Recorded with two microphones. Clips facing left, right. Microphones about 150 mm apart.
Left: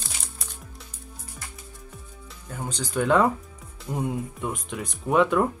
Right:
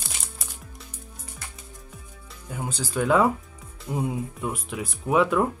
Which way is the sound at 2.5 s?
5° right (ahead or behind).